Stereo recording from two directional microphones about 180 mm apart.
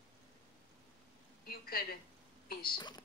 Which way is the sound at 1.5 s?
55° left (ahead or behind).